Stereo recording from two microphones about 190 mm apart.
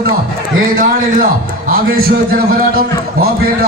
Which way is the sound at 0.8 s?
45° right (ahead or behind).